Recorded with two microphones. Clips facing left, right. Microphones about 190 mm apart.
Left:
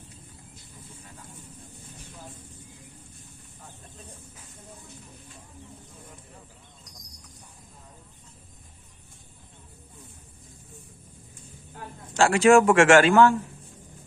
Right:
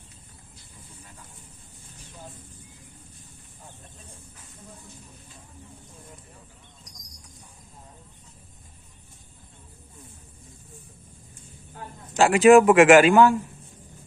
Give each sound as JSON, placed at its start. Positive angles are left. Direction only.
{"t": 12.2, "sound": "a man's voice", "side_deg": -15}